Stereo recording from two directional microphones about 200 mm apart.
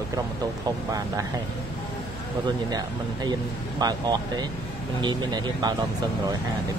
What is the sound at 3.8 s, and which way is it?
Speech, 20° right (ahead or behind).